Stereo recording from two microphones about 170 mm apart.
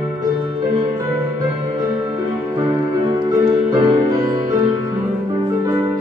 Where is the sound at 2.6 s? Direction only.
25° right (ahead or behind).